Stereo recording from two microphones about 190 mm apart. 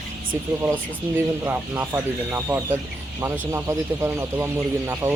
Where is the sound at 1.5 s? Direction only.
10° right (ahead or behind).